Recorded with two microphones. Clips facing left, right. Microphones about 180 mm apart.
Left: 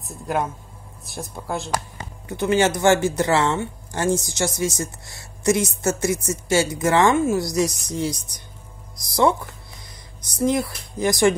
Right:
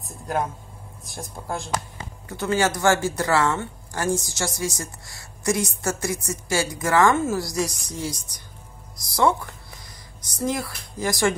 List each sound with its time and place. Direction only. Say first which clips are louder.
1.0 s speech: left 3 dB; centre (ahead or behind)
2.2 s speech: left 4 dB; 20° left (ahead or behind)